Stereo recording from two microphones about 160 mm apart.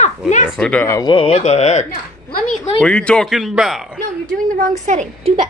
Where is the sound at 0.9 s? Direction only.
25° left (ahead or behind); by 1.9 s 45° left (ahead or behind).